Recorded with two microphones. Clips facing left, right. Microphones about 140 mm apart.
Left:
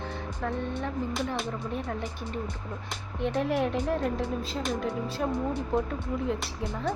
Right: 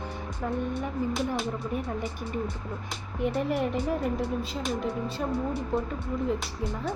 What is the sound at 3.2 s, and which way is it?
Speech, 5° right (ahead or behind).